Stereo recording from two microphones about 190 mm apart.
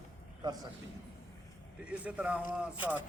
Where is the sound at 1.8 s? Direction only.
5° right (ahead or behind).